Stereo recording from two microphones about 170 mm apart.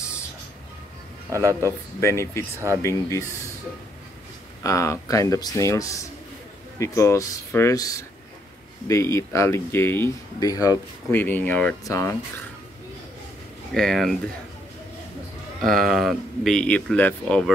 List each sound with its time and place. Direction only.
1.3 s a man's voice: 15° right (ahead or behind)
2.0 s speech: 15° left (ahead or behind)
4.6 s speech: 20° left (ahead or behind)
13.7 s speech: centre (ahead or behind)
15.6 s speech: centre (ahead or behind)